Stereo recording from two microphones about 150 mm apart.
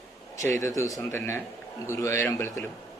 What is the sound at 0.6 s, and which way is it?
A man's voice, 20° left (ahead or behind).